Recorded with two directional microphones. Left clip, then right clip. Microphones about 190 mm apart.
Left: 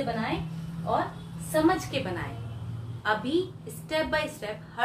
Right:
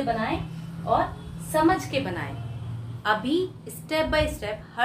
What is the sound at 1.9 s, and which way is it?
A woman's voice, 20° right (ahead or behind).